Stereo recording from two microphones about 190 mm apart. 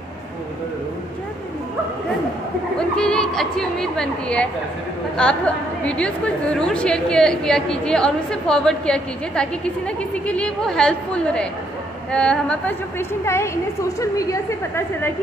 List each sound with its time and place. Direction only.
3.0 s a woman's voice: 5° left (ahead or behind)